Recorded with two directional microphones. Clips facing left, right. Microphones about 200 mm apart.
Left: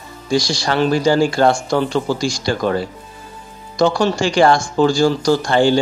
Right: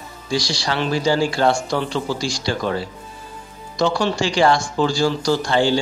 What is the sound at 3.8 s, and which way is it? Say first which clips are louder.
Speech: left 4 dB; 45° left (ahead or behind).